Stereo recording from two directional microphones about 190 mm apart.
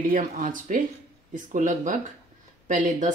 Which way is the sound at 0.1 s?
45° right (ahead or behind).